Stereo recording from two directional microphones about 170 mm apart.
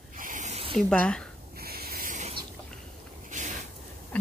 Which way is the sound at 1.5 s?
65° right (ahead or behind).